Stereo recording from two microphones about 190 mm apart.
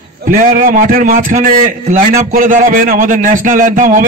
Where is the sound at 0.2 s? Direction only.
45° right (ahead or behind).